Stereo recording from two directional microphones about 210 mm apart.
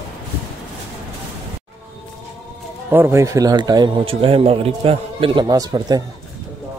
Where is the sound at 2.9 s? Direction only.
10° right (ahead or behind).